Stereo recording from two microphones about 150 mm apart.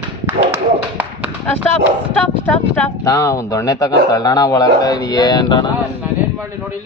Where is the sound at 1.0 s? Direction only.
10° right (ahead or behind).